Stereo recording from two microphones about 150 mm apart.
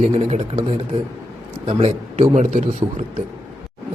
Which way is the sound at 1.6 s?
45° right (ahead or behind).